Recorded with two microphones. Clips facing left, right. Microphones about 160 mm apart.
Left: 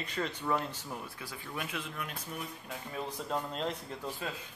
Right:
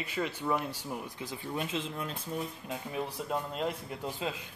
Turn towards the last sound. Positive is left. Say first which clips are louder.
# right 4 dB
turn(degrees=-20)  # may be behind; listen again after turning